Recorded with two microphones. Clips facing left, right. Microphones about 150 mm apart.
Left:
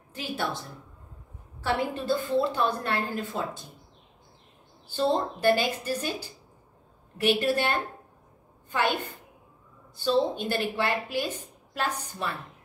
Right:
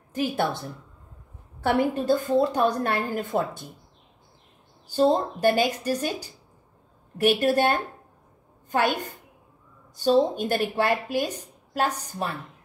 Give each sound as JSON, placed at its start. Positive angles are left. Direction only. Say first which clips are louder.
{"t": 0.1, "sound": "a woman's voice", "louder": "right 6 dB", "side_deg": -50}
{"t": 1.6, "sound": "a woman's voice", "louder": "right 5 dB", "side_deg": -50}
{"t": 4.9, "sound": "a woman's voice", "louder": "right 5 dB", "side_deg": -40}
{"t": 7.2, "sound": "a woman's voice", "louder": "right 4 dB", "side_deg": -45}